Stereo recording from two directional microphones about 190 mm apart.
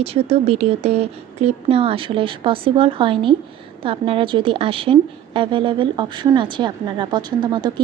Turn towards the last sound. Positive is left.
turn(degrees=-25)  # may be behind; listen again after turning